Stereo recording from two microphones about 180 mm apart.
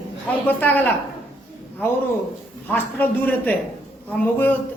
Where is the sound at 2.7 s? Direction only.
10° left (ahead or behind).